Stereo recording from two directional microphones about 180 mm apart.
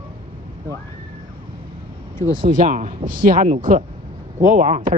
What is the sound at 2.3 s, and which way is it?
A man's voice, 50° right (ahead or behind).